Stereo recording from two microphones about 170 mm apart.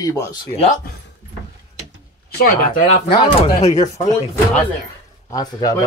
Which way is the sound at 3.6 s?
40° left (ahead or behind).